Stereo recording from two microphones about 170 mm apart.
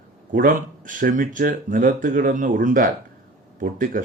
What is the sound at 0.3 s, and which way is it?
Speech, 50° right (ahead or behind).